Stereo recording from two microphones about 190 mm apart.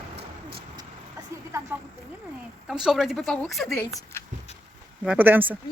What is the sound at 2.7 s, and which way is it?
Speech, centre (ahead or behind).